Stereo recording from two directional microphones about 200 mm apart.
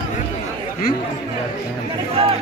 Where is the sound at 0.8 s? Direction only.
45° left (ahead or behind).